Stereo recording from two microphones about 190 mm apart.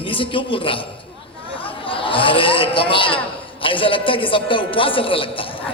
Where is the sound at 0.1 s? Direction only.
25° left (ahead or behind).